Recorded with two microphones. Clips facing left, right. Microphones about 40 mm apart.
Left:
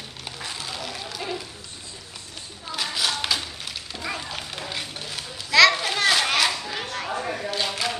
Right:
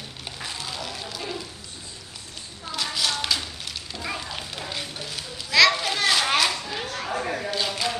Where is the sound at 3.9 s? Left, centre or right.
Centre.